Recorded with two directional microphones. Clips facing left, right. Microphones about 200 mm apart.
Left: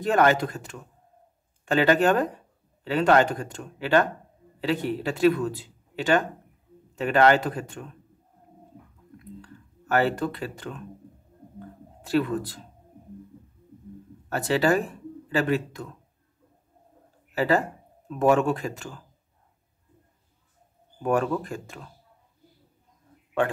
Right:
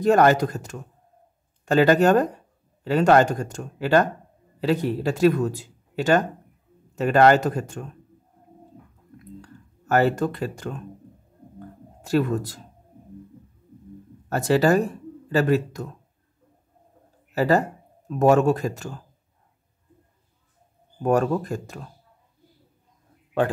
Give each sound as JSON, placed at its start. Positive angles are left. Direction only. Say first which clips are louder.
{"t": 0.0, "sound": "speech", "louder": "right 4 dB", "side_deg": -40}
{"t": 9.4, "sound": "speech", "louder": "right 1 dB", "side_deg": -40}
{"t": 12.0, "sound": "speech", "louder": "right 2 dB", "side_deg": -45}
{"t": 14.3, "sound": "speech", "louder": "right 4 dB", "side_deg": -40}
{"t": 17.3, "sound": "speech", "louder": "right 3 dB", "side_deg": -40}
{"t": 21.0, "sound": "speech", "louder": "right 3 dB", "side_deg": -40}